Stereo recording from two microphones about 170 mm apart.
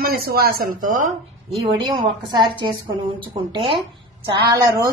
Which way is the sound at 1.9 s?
25° right (ahead or behind).